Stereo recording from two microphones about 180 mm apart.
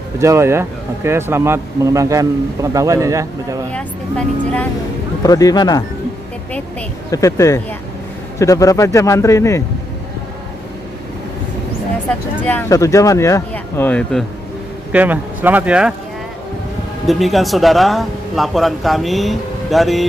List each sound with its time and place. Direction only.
0.2 s speech: 15° right (ahead or behind)
5.2 s speech: 20° left (ahead or behind)
7.1 s speech: 20° left (ahead or behind)
12.4 s speech: 10° left (ahead or behind)
14.9 s speech: 10° right (ahead or behind)
17.0 s speech: centre (ahead or behind)